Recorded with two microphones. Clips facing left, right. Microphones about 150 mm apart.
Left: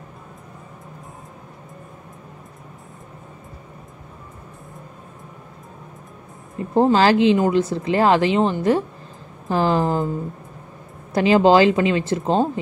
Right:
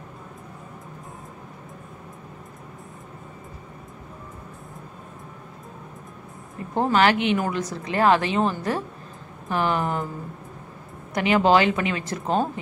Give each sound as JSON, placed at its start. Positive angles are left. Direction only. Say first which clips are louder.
{"t": 6.7, "sound": "a woman's voice", "louder": "left 5 dB", "side_deg": 30}
{"t": 11.1, "sound": "speech", "louder": "left 5 dB", "side_deg": 30}